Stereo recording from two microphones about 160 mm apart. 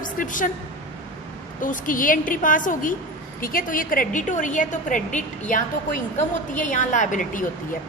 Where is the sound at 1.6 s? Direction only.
55° left (ahead or behind).